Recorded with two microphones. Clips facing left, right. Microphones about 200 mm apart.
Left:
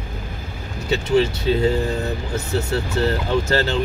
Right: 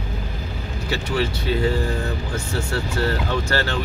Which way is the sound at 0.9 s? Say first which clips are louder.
Left 6 dB; 25° left (ahead or behind).